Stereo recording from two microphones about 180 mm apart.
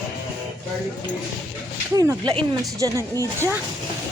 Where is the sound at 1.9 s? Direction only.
20° right (ahead or behind).